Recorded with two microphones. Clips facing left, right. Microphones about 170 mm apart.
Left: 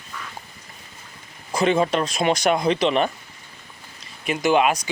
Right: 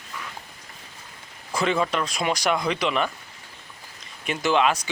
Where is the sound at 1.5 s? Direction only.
20° left (ahead or behind).